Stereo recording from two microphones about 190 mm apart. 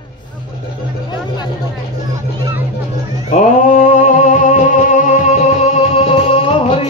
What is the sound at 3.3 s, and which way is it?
Music, 45° left (ahead or behind).